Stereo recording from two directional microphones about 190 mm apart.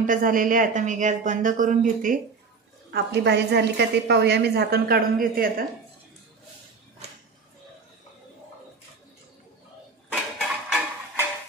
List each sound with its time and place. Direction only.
0.0 s a woman's voice: 45° right (ahead or behind)
2.9 s a woman's voice: 65° right (ahead or behind)
10.4 s music: 5° right (ahead or behind)